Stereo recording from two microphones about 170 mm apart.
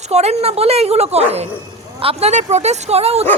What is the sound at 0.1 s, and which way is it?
Speech, 40° right (ahead or behind).